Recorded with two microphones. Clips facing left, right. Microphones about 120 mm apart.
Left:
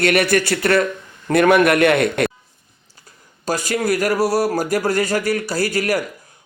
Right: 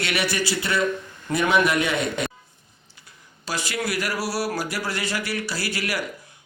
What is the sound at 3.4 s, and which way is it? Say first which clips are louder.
Speech: left 8 dB; 45° left (ahead or behind).